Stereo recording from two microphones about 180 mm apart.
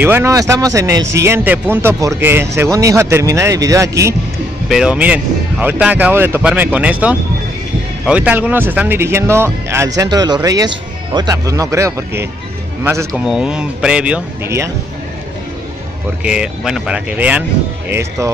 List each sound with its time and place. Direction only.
0.0 s speech: 15° right (ahead or behind)
4.6 s speech: 5° right (ahead or behind)
16.3 s speech: 5° right (ahead or behind)